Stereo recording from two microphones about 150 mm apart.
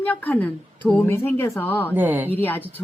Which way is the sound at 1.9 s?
10° right (ahead or behind).